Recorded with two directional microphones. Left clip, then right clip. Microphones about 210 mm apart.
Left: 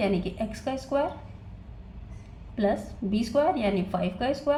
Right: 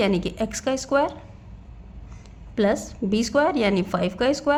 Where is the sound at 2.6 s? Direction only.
50° right (ahead or behind).